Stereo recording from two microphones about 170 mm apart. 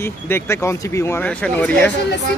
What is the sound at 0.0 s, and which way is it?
Speech, 15° left (ahead or behind).